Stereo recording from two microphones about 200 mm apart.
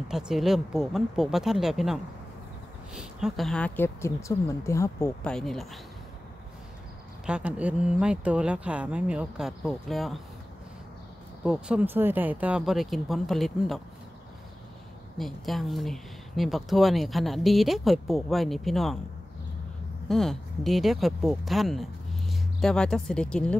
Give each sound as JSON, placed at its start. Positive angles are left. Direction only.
{"t": 0.1, "sound": "speech", "side_deg": 0}
{"t": 7.2, "sound": "speech", "side_deg": -5}
{"t": 11.4, "sound": "speech", "side_deg": -5}
{"t": 15.1, "sound": "speech", "side_deg": 0}
{"t": 20.1, "sound": "speech", "side_deg": 0}